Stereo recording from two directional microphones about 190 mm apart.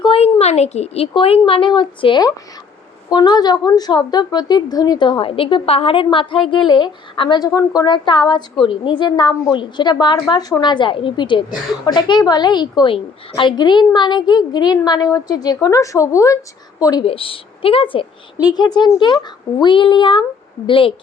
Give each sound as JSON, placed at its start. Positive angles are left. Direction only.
{"t": 0.0, "sound": "a woman's voice", "side_deg": 30}